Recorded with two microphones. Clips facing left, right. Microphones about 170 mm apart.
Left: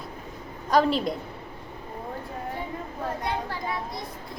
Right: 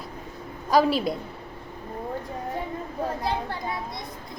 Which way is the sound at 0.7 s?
5° right (ahead or behind).